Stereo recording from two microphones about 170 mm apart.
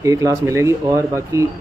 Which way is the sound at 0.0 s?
20° right (ahead or behind).